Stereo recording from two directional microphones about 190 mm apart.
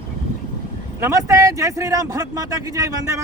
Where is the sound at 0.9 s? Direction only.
15° right (ahead or behind).